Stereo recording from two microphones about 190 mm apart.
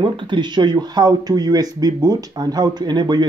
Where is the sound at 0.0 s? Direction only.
25° right (ahead or behind).